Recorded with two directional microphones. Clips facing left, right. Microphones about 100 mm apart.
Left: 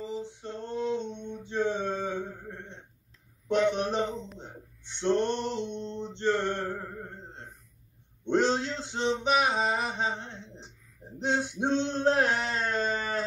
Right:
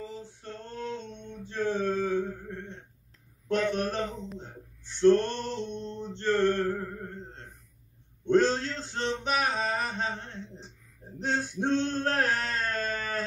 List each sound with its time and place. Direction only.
0.0 s male singing: 20° left (ahead or behind)
3.4 s a man's voice: 20° left (ahead or behind)
4.1 s a sound: centre (ahead or behind)
4.4 s male singing: 20° left (ahead or behind)
8.3 s a sound: 15° left (ahead or behind)
11.5 s male singing: 20° left (ahead or behind)